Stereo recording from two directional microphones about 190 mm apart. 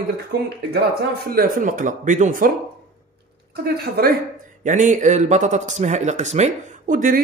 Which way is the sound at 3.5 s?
55° right (ahead or behind).